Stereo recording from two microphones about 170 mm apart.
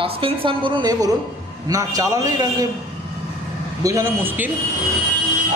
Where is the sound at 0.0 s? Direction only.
30° right (ahead or behind).